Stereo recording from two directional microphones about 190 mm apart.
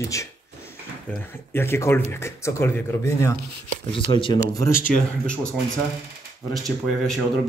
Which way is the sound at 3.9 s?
25° left (ahead or behind).